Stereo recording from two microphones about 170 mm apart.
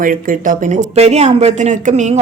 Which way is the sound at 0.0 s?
50° right (ahead or behind).